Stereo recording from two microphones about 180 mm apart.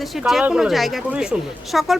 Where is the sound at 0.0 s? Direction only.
Centre (ahead or behind).